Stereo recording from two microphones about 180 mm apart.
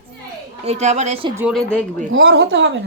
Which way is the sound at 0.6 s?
40° right (ahead or behind).